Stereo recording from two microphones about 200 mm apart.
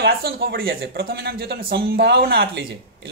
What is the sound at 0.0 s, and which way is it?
Speech, 50° right (ahead or behind).